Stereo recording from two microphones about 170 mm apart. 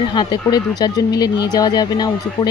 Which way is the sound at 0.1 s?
25° left (ahead or behind).